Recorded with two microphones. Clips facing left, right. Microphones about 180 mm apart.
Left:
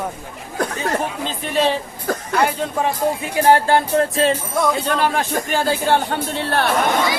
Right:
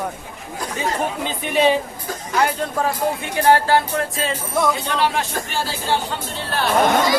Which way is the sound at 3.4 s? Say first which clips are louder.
Left 1 dB; 20° left (ahead or behind).